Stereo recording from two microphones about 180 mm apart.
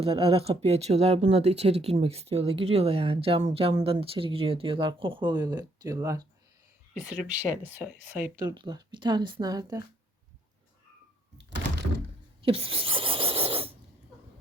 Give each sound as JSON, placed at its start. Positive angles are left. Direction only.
{"t": 0.0, "sound": "speech", "side_deg": -30}
{"t": 7.0, "sound": "speech", "side_deg": -5}
{"t": 8.4, "sound": "speech", "side_deg": -25}
{"t": 12.5, "sound": "a sound", "side_deg": -30}